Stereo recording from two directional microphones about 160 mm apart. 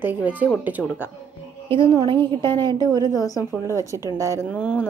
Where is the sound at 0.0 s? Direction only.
10° right (ahead or behind).